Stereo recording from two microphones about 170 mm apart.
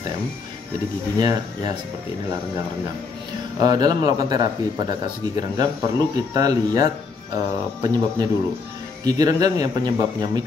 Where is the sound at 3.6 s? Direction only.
25° right (ahead or behind).